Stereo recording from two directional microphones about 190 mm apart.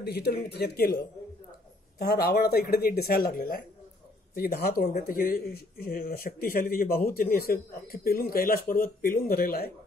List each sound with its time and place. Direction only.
0.0 s speech: 60° left (ahead or behind)